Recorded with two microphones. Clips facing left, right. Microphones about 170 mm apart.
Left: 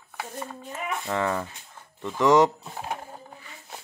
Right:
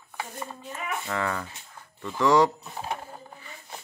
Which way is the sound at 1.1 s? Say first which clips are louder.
Left 4 dB; 20° left (ahead or behind).